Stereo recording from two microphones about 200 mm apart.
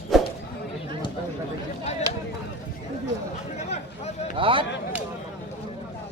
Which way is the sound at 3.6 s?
35° left (ahead or behind).